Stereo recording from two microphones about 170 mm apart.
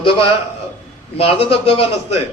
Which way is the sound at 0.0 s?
30° left (ahead or behind).